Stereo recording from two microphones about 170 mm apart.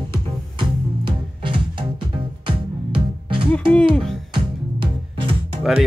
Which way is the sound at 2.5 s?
30° right (ahead or behind).